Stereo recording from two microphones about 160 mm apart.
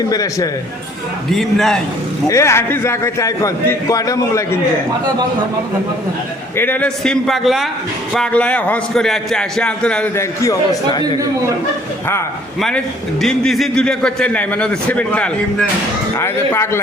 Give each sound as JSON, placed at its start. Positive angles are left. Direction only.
{"t": 0.1, "sound": "a man's voice", "side_deg": 20}
{"t": 1.3, "sound": "a man's voice", "side_deg": 0}
{"t": 2.2, "sound": "a man's voice", "side_deg": 20}
{"t": 6.6, "sound": "a man's voice", "side_deg": 10}
{"t": 10.4, "sound": "a man's voice", "side_deg": 20}
{"t": 12.5, "sound": "a man's voice", "side_deg": 5}